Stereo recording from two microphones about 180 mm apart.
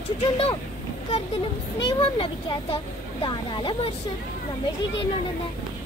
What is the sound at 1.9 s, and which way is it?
Speech, 30° left (ahead or behind).